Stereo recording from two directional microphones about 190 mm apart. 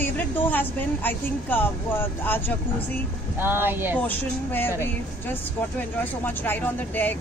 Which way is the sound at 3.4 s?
10° right (ahead or behind).